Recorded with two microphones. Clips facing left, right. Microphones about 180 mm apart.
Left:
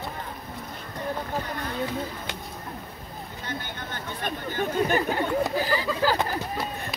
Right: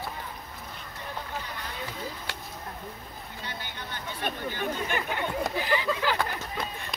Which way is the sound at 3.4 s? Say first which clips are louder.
Left 5 dB; 45° left (ahead or behind).